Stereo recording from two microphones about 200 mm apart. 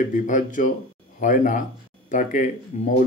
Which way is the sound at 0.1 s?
40° left (ahead or behind).